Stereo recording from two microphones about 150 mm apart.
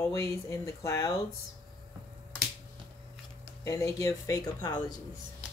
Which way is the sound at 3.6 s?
20° left (ahead or behind).